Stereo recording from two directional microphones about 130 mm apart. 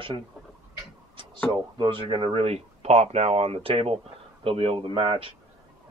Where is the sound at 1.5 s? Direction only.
40° right (ahead or behind).